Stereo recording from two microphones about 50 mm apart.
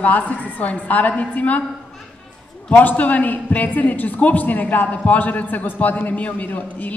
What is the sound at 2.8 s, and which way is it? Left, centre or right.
A man's voice, left.